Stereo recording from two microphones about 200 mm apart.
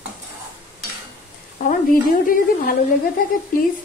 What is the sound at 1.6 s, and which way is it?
Speech, 40° left (ahead or behind).